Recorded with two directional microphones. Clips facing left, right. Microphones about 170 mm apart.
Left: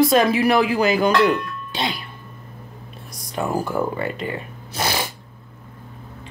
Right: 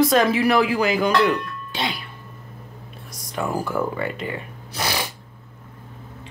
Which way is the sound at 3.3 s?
25° left (ahead or behind).